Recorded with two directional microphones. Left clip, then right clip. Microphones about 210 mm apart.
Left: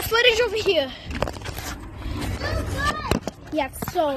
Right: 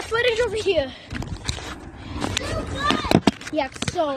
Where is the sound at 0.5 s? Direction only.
Centre (ahead or behind).